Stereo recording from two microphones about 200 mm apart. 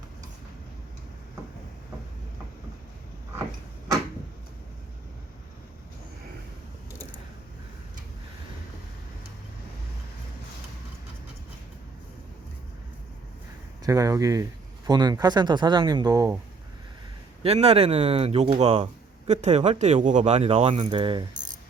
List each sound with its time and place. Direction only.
13.8 s speech: 15° right (ahead or behind)
17.4 s speech: 30° right (ahead or behind)